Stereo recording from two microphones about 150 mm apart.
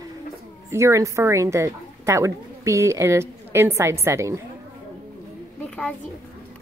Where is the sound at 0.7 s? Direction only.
20° right (ahead or behind).